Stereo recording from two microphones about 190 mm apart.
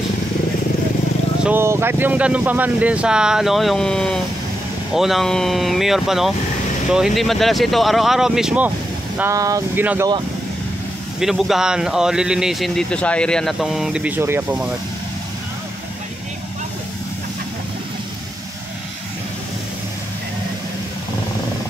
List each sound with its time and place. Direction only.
1.4 s speech: 10° right (ahead or behind)
9.2 s speech: 15° right (ahead or behind)
11.1 s speech: centre (ahead or behind)